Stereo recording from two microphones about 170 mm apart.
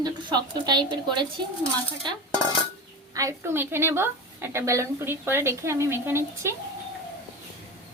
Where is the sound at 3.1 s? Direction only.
15° right (ahead or behind).